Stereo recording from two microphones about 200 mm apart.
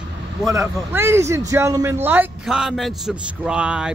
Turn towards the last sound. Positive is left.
turn(degrees=-5)  # may be behind; listen again after turning